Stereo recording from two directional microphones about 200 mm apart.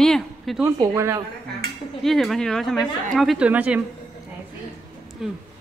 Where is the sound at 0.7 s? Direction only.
15° right (ahead or behind).